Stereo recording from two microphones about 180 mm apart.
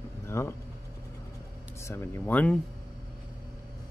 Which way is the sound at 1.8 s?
15° left (ahead or behind).